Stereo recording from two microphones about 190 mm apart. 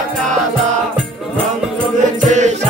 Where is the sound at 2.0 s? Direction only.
40° right (ahead or behind).